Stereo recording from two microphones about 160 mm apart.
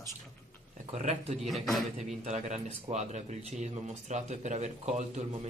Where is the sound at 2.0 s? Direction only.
45° right (ahead or behind).